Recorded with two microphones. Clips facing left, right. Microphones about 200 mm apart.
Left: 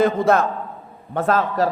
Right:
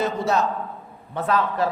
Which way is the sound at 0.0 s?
55° left (ahead or behind).